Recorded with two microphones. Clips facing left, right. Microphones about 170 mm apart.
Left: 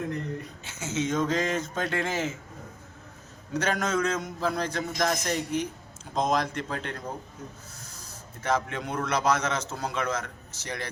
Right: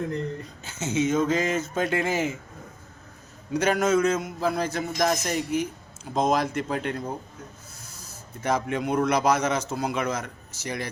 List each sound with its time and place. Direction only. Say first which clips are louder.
0.8 s a man's voice: right 5 dB; 20° right (ahead or behind)
1.0 s a man's voice: right 3 dB; 5° right (ahead or behind)
3.5 s a man's voice: right 5 dB; 10° right (ahead or behind)
8.4 s a man's voice: right 3 dB; 10° right (ahead or behind)